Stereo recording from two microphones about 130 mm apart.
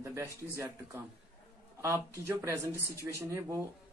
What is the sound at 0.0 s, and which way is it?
Speech, 20° right (ahead or behind).